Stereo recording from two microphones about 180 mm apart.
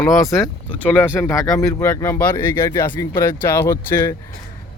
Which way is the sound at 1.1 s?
15° left (ahead or behind).